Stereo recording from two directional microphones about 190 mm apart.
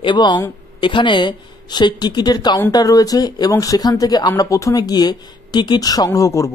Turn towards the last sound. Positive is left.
turn(degrees=15)  # may be behind; listen again after turning